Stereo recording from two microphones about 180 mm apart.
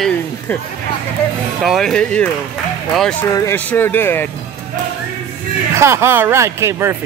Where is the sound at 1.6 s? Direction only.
Centre (ahead or behind).